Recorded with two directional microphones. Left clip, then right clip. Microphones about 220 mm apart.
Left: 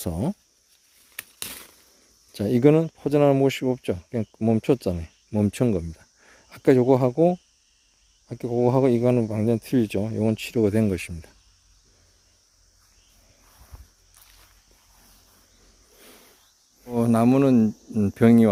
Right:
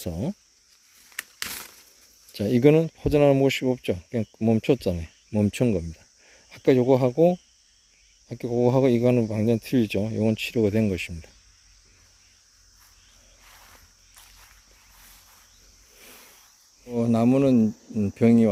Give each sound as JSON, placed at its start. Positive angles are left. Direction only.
{"t": 0.0, "sound": "speech", "side_deg": 20}
{"t": 2.3, "sound": "speech", "side_deg": 5}
{"t": 16.8, "sound": "speech", "side_deg": 15}